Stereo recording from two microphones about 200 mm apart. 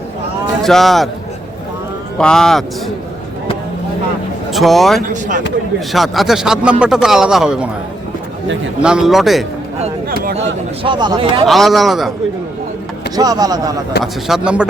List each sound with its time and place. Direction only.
0.6 s speech: centre (ahead or behind)
2.1 s speech: 5° left (ahead or behind)
4.5 s speech: centre (ahead or behind)
8.8 s speech: 5° right (ahead or behind)
10.1 s a sound: 45° right (ahead or behind)
10.3 s speech: 35° right (ahead or behind)
10.9 s speech: 20° right (ahead or behind)
11.4 s speech: centre (ahead or behind)
13.1 s speech: 20° right (ahead or behind)
14.0 s speech: centre (ahead or behind)